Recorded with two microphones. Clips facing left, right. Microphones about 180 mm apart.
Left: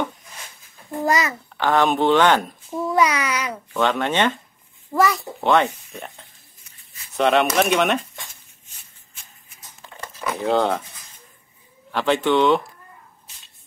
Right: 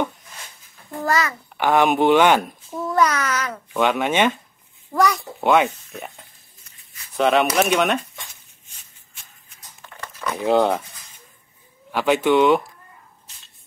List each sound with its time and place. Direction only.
1.0 s a child's voice: 20° left (ahead or behind)
1.6 s speech: 15° right (ahead or behind)
2.8 s a sound: 10° left (ahead or behind)
3.7 s speech: 10° right (ahead or behind)
4.9 s speech: centre (ahead or behind)
9.8 s a sound: 25° left (ahead or behind)
10.3 s speech: 5° right (ahead or behind)
11.9 s speech: 5° right (ahead or behind)